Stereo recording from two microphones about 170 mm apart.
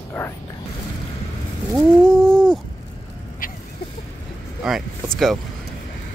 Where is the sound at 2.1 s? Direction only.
5° left (ahead or behind).